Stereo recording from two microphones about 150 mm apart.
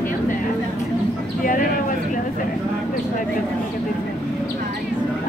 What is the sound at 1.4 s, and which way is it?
Speech, 65° left (ahead or behind).